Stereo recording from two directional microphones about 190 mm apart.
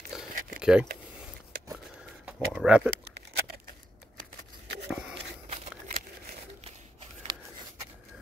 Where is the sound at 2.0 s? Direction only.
5° right (ahead or behind).